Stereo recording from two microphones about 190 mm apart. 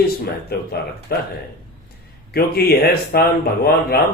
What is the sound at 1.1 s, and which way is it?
Speech, 55° left (ahead or behind).